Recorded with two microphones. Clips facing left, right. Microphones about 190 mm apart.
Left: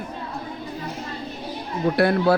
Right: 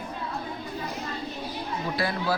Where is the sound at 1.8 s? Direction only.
60° left (ahead or behind).